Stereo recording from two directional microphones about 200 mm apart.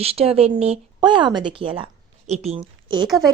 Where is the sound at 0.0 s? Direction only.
30° right (ahead or behind).